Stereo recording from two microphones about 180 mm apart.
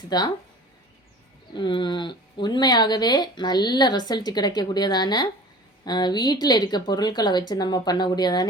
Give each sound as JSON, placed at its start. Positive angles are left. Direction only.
{"t": 0.1, "sound": "speech", "side_deg": 20}
{"t": 1.5, "sound": "speech", "side_deg": 25}